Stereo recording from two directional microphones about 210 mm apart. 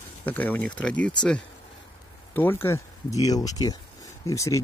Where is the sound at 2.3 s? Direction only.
10° left (ahead or behind).